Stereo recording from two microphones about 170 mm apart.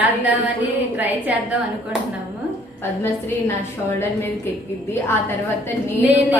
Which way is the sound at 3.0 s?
15° left (ahead or behind).